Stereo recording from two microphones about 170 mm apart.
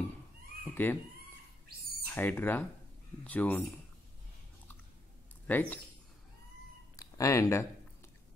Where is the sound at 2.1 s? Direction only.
10° left (ahead or behind).